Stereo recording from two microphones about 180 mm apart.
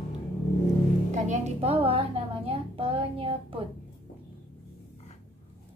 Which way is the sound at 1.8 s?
30° right (ahead or behind).